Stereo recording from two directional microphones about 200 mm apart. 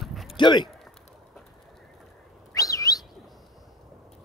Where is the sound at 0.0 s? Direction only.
Centre (ahead or behind).